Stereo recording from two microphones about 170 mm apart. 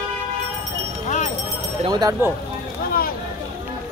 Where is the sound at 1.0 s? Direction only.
45° left (ahead or behind).